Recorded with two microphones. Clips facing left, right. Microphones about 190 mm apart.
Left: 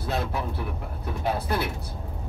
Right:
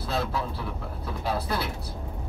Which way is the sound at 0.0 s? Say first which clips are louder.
Even; 20° left (ahead or behind).